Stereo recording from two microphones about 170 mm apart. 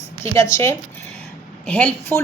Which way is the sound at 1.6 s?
10° left (ahead or behind).